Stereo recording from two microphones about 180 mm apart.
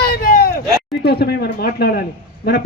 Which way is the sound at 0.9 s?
65° left (ahead or behind).